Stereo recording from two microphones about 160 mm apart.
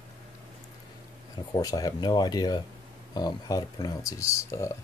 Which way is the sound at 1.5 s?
25° left (ahead or behind).